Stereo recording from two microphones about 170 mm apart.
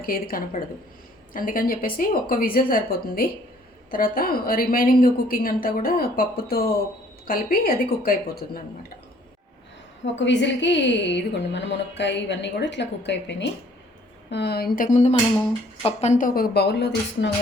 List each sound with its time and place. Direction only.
0.0 s a woman's voice: 60° left (ahead or behind)
10.2 s speech: 90° left
14.3 s a woman's voice: 80° left; by 15.1 s 45° left (ahead or behind)
15.8 s a woman's voice: 35° left (ahead or behind); by 17.3 s 80° left